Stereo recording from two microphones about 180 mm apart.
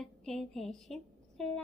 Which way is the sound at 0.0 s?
Centre (ahead or behind).